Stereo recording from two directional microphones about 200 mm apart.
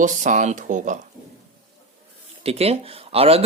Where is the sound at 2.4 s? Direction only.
30° right (ahead or behind).